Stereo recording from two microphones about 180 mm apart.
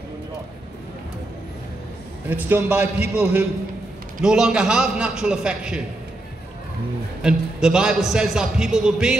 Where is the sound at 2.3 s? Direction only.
10° right (ahead or behind).